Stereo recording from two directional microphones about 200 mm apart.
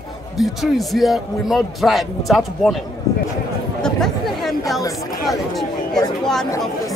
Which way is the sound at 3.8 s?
Centre (ahead or behind).